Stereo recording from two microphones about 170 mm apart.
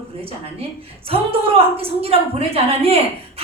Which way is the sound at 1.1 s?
35° right (ahead or behind).